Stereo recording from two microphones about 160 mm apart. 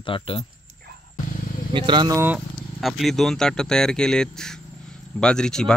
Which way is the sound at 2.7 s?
Centre (ahead or behind).